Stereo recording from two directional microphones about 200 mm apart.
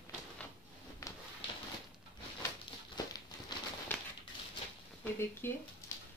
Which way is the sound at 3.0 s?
20° left (ahead or behind).